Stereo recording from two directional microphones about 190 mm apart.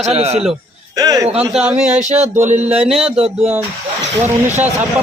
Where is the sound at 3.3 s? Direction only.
10° right (ahead or behind).